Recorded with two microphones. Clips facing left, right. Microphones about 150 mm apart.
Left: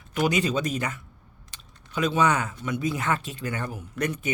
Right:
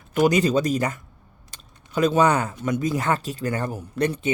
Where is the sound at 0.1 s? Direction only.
40° right (ahead or behind).